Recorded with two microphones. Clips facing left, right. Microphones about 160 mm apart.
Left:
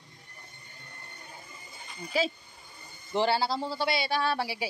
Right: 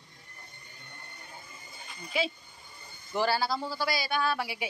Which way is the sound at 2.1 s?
40° left (ahead or behind).